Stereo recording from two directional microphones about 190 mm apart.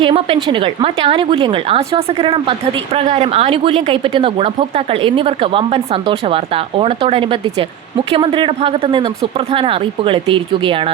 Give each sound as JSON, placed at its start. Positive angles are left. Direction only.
{"t": 0.0, "sound": "a woman's voice", "side_deg": -30}